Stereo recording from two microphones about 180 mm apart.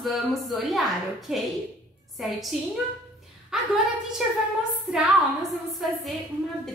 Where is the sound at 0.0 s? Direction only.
Centre (ahead or behind).